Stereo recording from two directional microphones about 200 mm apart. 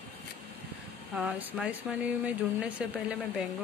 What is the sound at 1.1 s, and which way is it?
Speech, 5° right (ahead or behind).